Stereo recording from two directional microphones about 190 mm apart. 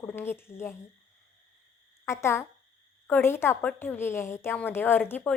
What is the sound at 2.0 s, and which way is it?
Speech, 15° left (ahead or behind).